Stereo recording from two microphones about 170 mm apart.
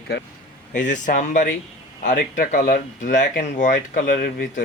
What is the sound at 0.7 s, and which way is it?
Speech, 50° left (ahead or behind).